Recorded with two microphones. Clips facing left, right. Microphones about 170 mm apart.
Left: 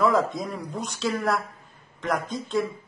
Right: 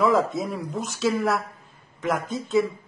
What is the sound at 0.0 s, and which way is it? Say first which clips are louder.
A woman's voice: right 1 dB; centre (ahead or behind).